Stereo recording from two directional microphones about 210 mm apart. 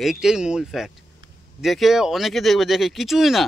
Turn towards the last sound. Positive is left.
turn(degrees=0)  # may be behind; listen again after turning